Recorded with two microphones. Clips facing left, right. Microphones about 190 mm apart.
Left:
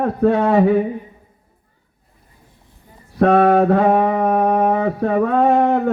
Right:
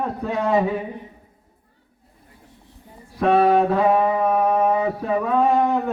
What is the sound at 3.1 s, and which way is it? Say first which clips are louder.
Mantra: left 4 dB; 60° left (ahead or behind).